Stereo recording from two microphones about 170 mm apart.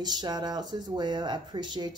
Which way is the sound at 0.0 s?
25° right (ahead or behind).